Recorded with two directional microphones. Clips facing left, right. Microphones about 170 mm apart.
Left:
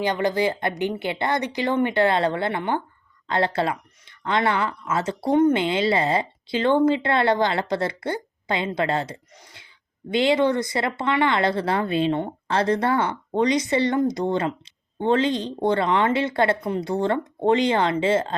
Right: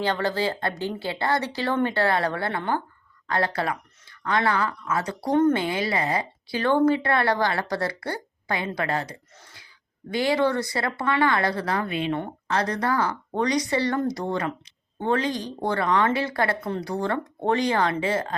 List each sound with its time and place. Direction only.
0.0 s speech: 15° left (ahead or behind)